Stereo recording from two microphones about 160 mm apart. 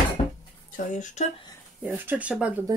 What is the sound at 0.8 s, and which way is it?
Speech, 50° left (ahead or behind).